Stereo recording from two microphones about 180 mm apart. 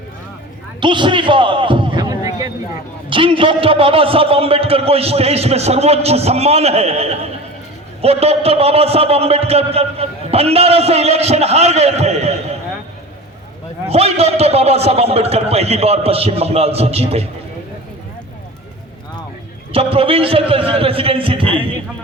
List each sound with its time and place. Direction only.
0.8 s a sound: 25° right (ahead or behind)
3.1 s a man's voice: 30° right (ahead or behind)
13.9 s a man's voice: 35° right (ahead or behind)
19.7 s a man's voice: 30° right (ahead or behind)